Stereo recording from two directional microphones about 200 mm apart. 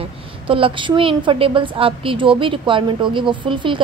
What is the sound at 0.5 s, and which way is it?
A woman's voice, 25° right (ahead or behind).